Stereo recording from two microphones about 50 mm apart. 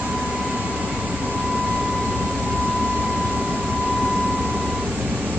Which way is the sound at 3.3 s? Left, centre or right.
Right.